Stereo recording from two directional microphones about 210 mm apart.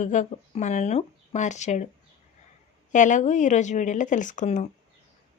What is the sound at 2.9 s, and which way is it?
Speech, 35° left (ahead or behind).